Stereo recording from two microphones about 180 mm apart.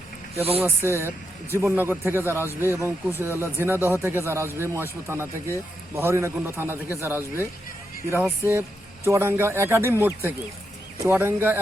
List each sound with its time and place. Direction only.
0.3 s speech: 35° right (ahead or behind)
0.6 s speech: 15° right (ahead or behind)